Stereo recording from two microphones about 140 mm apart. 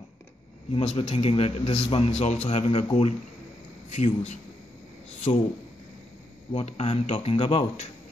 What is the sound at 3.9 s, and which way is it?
Speech, 55° left (ahead or behind).